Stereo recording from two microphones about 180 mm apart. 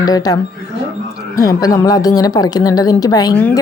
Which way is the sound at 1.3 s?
20° left (ahead or behind).